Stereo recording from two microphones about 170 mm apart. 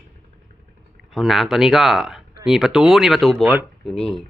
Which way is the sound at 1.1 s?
Centre (ahead or behind).